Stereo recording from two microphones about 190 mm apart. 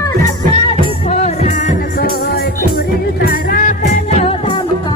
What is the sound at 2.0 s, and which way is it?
Music, 55° left (ahead or behind).